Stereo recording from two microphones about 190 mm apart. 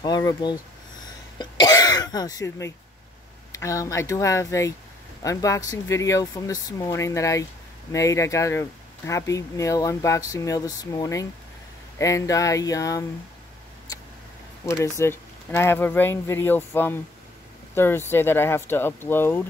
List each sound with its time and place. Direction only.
0.0 s speech: 20° left (ahead or behind)
14.7 s speech: 15° left (ahead or behind)